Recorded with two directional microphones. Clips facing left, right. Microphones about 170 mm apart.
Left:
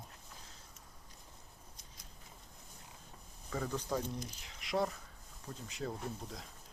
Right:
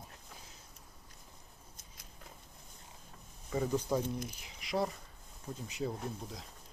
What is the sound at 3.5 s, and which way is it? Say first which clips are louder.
Speech: right 5 dB; 15° right (ahead or behind).